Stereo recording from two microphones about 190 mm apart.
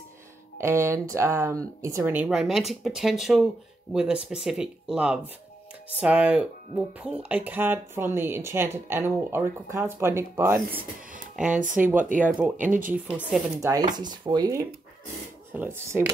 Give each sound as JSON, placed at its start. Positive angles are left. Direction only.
{"t": 0.6, "sound": "speech", "side_deg": -15}
{"t": 11.4, "sound": "speech", "side_deg": -40}
{"t": 11.7, "sound": "speech", "side_deg": -10}
{"t": 13.6, "sound": "speech", "side_deg": -20}